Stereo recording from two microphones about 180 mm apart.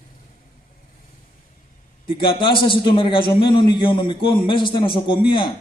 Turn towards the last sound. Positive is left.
turn(degrees=25)  # may be behind; listen again after turning